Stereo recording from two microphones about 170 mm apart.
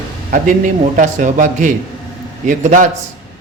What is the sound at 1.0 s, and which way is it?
A man's voice, 45° right (ahead or behind).